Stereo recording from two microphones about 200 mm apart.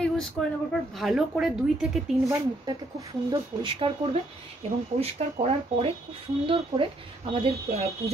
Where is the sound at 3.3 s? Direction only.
25° right (ahead or behind).